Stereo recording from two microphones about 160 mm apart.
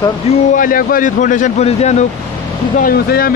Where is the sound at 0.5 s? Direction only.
60° left (ahead or behind).